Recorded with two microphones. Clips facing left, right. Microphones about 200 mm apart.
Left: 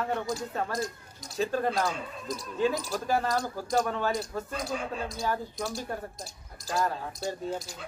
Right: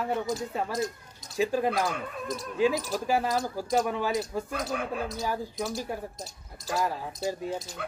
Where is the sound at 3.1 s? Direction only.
10° right (ahead or behind).